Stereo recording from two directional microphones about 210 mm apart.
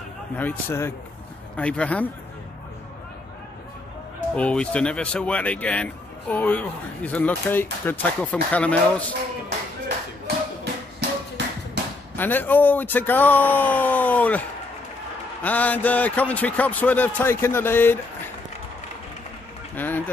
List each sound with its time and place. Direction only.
0.4 s a man's voice: 10° left (ahead or behind)
4.4 s a man's voice: 5° left (ahead or behind)
10.2 s a sound: 55° right (ahead or behind)
12.2 s a man's voice: 10° left (ahead or behind)
15.4 s a man's voice: 10° left (ahead or behind)
19.7 s a sound: 10° left (ahead or behind)